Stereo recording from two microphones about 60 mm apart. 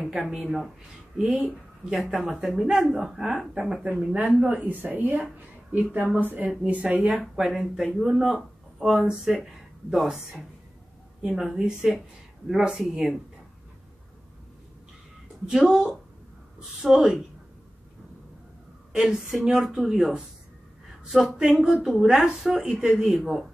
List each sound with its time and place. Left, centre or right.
0.4 s speech: centre
4.6 s a woman's voice: right; by 10.2 s centre
11.6 s speech: centre
15.4 s speech: centre
18.9 s speech: centre